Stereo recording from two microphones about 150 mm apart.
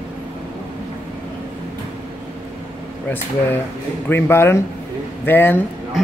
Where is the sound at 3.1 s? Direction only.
15° left (ahead or behind).